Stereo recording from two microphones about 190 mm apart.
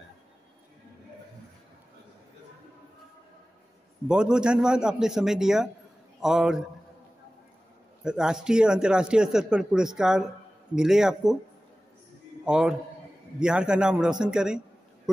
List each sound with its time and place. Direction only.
4.1 s a man's voice: 5° right (ahead or behind)
8.0 s a man's voice: 5° right (ahead or behind)
12.4 s a man's voice: 5° right (ahead or behind)